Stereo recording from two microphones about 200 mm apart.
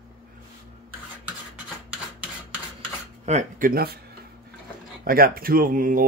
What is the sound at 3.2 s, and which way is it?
Speech, 35° right (ahead or behind).